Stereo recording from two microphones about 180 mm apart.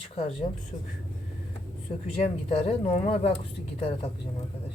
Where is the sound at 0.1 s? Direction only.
35° left (ahead or behind).